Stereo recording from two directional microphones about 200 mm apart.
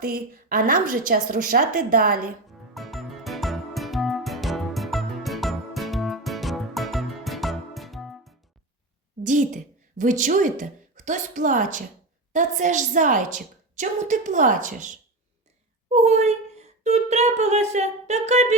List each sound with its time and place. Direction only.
0.0 s a woman's voice: 45° right (ahead or behind)
2.7 s music: centre (ahead or behind)
9.2 s a woman's voice: 40° right (ahead or behind)
15.9 s a sound: 35° right (ahead or behind)